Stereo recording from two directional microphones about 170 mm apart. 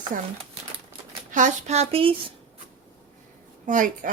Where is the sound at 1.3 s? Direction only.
45° right (ahead or behind).